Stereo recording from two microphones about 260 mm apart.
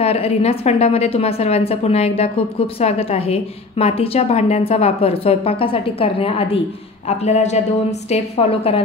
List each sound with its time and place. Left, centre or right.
0.0 s a woman's voice: left